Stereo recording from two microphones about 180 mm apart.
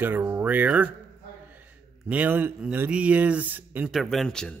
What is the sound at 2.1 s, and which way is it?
Speech, 10° right (ahead or behind).